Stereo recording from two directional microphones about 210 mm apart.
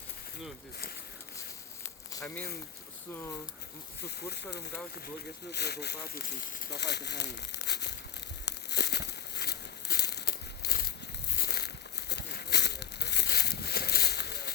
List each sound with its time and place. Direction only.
2.1 s speech: 5° left (ahead or behind)
4.0 s speech: 50° left (ahead or behind)
8.4 s crumpling: 55° left (ahead or behind)
11.3 s a sound: 50° left (ahead or behind)